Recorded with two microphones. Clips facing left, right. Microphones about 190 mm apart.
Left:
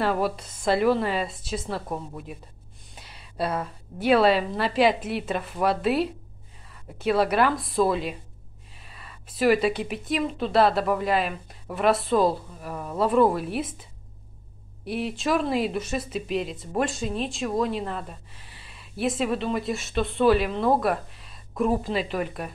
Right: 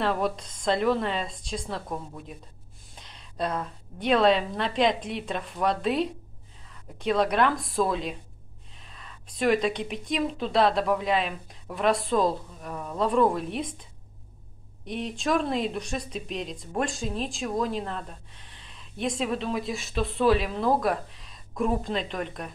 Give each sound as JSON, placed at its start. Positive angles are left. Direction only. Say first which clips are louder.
{"t": 0.0, "sound": "speech", "louder": "left 2 dB", "side_deg": 5}
{"t": 14.9, "sound": "speech", "louder": "left 2 dB", "side_deg": 5}